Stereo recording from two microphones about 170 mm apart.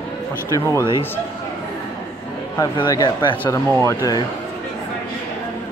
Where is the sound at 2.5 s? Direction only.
25° left (ahead or behind).